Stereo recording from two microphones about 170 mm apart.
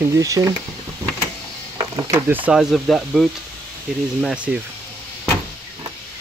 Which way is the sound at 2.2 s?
10° right (ahead or behind).